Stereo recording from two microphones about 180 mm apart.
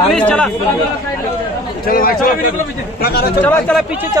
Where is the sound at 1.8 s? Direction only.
55° left (ahead or behind).